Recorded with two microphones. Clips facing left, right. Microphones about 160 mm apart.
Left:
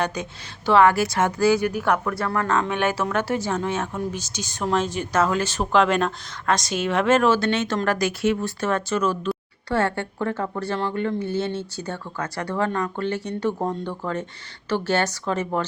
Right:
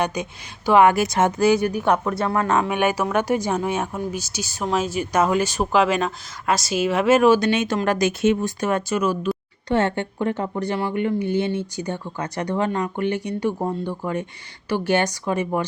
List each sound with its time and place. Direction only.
0.0 s speech: 15° right (ahead or behind)